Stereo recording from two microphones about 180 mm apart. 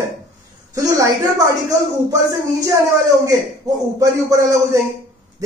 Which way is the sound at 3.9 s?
15° right (ahead or behind).